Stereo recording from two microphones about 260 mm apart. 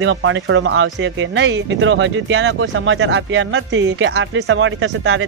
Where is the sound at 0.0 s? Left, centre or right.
Right.